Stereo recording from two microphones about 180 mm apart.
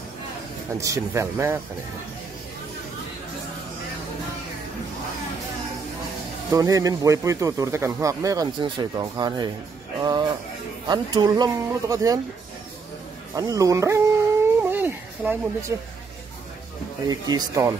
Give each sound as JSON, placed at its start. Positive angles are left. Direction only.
{"t": 0.7, "sound": "speech", "side_deg": -15}
{"t": 6.5, "sound": "speech", "side_deg": -20}
{"t": 9.9, "sound": "music", "side_deg": -20}
{"t": 10.9, "sound": "speech", "side_deg": -25}
{"t": 13.3, "sound": "speech", "side_deg": -20}
{"t": 14.6, "sound": "a sound", "side_deg": -10}
{"t": 17.1, "sound": "speech", "side_deg": -20}